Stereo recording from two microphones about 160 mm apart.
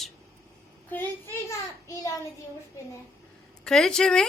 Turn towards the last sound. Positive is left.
turn(degrees=5)  # may be behind; listen again after turning